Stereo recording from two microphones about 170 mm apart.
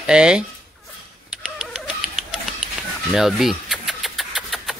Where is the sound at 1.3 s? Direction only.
5° right (ahead or behind).